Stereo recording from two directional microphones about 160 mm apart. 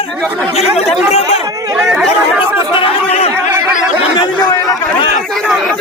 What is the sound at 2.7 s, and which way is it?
Speech, 35° left (ahead or behind).